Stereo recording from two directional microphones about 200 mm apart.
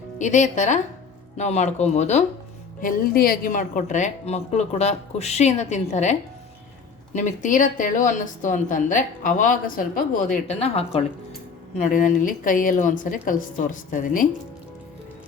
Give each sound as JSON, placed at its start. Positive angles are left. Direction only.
{"t": 0.2, "sound": "speech", "side_deg": 35}
{"t": 2.8, "sound": "speech", "side_deg": 45}
{"t": 10.5, "sound": "speech", "side_deg": 30}
{"t": 11.8, "sound": "speech", "side_deg": 40}